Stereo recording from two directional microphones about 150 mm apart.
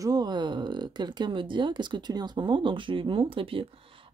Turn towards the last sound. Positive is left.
turn(degrees=-35)  # may be behind; listen again after turning